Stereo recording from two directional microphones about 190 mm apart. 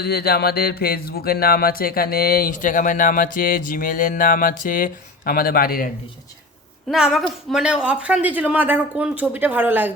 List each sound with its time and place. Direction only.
0.0 s speech: 55° left (ahead or behind)
6.8 s speech: centre (ahead or behind)